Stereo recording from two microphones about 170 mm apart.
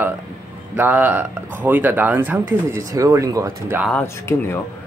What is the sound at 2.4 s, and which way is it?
Speech, 20° right (ahead or behind).